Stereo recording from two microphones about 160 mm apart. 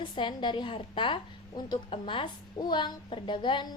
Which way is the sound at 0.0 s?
30° left (ahead or behind).